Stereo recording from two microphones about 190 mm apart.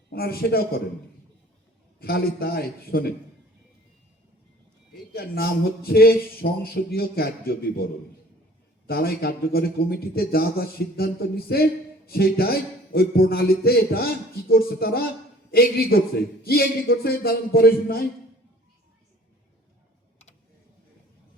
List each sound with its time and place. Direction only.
0.1 s a man's voice: 55° left (ahead or behind)
2.0 s a man's voice: 55° left (ahead or behind)
5.1 s a man's voice: 55° left (ahead or behind)
8.9 s a man's voice: 55° left (ahead or behind)